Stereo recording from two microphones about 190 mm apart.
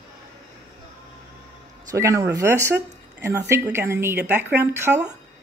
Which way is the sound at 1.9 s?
15° right (ahead or behind).